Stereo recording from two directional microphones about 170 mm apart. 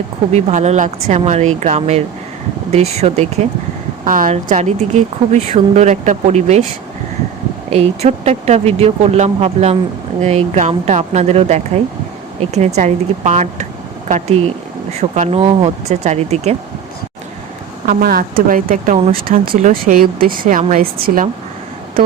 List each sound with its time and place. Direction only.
0.3 s speech: 40° right (ahead or behind)
4.0 s a woman's voice: 55° right (ahead or behind)
7.7 s speech: 40° right (ahead or behind)
17.8 s speech: 60° right (ahead or behind)